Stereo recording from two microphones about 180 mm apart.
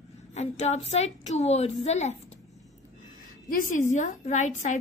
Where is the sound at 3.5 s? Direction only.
50° left (ahead or behind).